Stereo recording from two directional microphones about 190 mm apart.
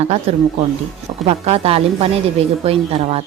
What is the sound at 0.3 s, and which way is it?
A woman's voice, 30° right (ahead or behind).